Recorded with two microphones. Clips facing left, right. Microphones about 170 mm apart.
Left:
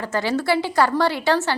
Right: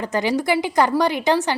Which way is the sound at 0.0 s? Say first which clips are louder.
Right 2 dB; 15° right (ahead or behind).